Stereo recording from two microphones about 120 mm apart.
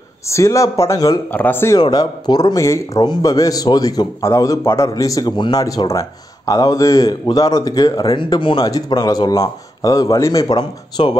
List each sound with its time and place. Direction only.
0.3 s speech: 25° left (ahead or behind)
1.3 s speech: 15° left (ahead or behind)
1.8 s a man's voice: 35° left (ahead or behind)
8.1 s a man's voice: 40° left (ahead or behind)